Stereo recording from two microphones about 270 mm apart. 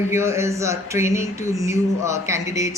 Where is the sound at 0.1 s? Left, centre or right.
Centre.